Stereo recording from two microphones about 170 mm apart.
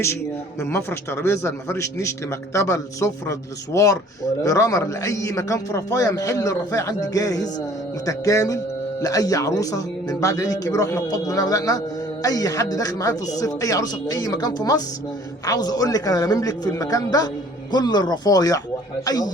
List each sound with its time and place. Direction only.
0.6 s a man's voice: 15° left (ahead or behind)